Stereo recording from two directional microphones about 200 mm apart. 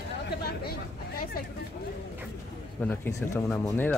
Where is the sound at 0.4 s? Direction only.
50° left (ahead or behind).